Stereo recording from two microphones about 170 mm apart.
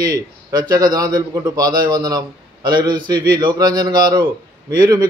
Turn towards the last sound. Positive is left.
turn(degrees=-20)  # may be behind; listen again after turning